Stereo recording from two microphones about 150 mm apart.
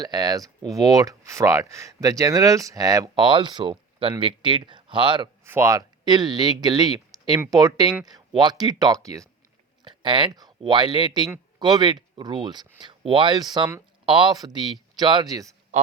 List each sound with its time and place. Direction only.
0.0 s speech: 25° right (ahead or behind)
5.5 s speech: 20° right (ahead or behind)
9.8 s a sound: 30° right (ahead or behind)
10.6 s speech: 30° right (ahead or behind)